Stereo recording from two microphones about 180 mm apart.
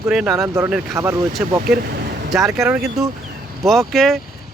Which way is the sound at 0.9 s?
15° right (ahead or behind).